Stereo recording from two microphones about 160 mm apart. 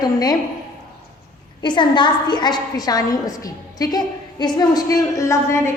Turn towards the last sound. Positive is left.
turn(degrees=15)  # may be behind; listen again after turning